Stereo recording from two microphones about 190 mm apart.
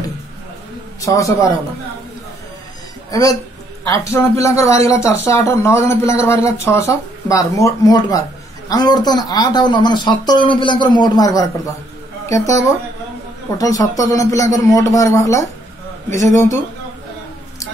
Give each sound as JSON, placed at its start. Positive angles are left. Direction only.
{"t": 1.0, "sound": "speech", "side_deg": 15}
{"t": 3.1, "sound": "speech", "side_deg": 20}